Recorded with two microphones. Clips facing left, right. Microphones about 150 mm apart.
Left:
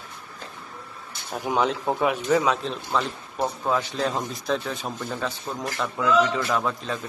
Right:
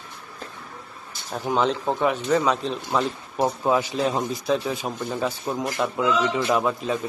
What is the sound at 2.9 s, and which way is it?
A man's voice, 20° right (ahead or behind).